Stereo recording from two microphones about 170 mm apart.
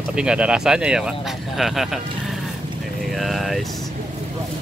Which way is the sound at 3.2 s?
Centre (ahead or behind).